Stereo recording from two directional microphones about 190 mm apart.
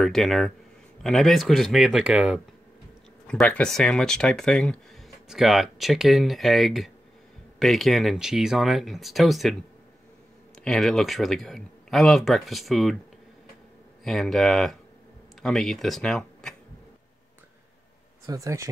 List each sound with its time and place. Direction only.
0.0 s speech: centre (ahead or behind)
3.3 s speech: 5° left (ahead or behind)
10.6 s speech: centre (ahead or behind)
14.0 s speech: centre (ahead or behind)
18.2 s speech: 15° right (ahead or behind)